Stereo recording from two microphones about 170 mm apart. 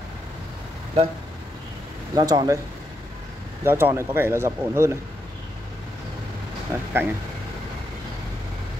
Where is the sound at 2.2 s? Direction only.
25° right (ahead or behind).